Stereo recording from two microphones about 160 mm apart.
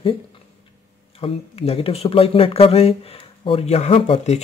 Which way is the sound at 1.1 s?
35° left (ahead or behind).